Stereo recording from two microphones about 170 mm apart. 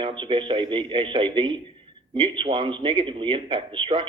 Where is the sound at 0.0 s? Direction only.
30° right (ahead or behind).